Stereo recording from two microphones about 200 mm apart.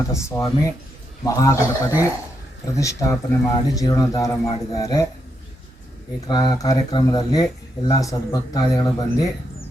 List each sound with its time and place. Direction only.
0.1 s speech: 15° left (ahead or behind)
6.2 s speech: 20° left (ahead or behind)